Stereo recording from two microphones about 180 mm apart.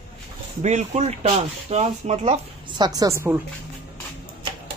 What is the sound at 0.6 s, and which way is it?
Speech, 40° right (ahead or behind).